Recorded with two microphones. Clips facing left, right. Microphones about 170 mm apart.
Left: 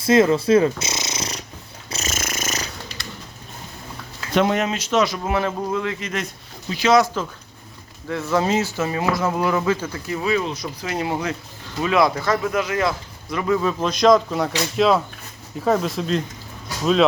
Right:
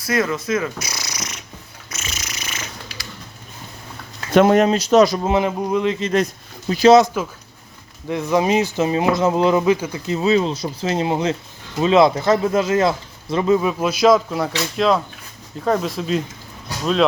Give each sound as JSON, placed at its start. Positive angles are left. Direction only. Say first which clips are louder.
{"t": 0.0, "sound": "speech", "louder": "left 6 dB", "side_deg": 25}
{"t": 1.9, "sound": "purr", "louder": "left 5 dB", "side_deg": 40}
{"t": 4.4, "sound": "speech", "louder": "right 6 dB", "side_deg": -45}
{"t": 5.2, "sound": "speech", "louder": "right 4 dB", "side_deg": -20}
{"t": 7.2, "sound": "speech", "louder": "right 2 dB", "side_deg": -10}
{"t": 13.6, "sound": "speech", "louder": "right 2 dB", "side_deg": -10}